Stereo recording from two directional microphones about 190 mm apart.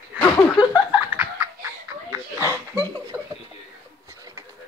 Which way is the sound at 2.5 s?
15° left (ahead or behind).